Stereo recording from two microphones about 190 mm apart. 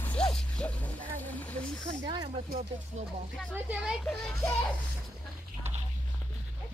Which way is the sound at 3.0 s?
35° right (ahead or behind).